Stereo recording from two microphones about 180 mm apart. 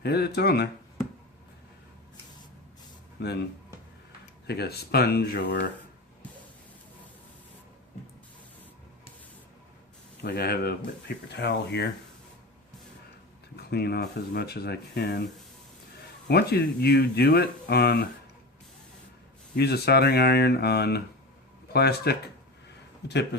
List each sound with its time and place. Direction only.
0.0 s speech: 65° left (ahead or behind)
3.2 s speech: 65° left (ahead or behind)
4.4 s speech: 65° left (ahead or behind)
10.2 s speech: 65° left (ahead or behind)
11.3 s speech: 70° left (ahead or behind)
13.6 s speech: 65° left (ahead or behind)
16.3 s speech: 60° left (ahead or behind)
19.5 s speech: 65° left (ahead or behind)